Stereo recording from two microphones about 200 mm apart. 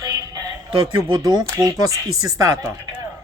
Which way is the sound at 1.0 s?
15° right (ahead or behind).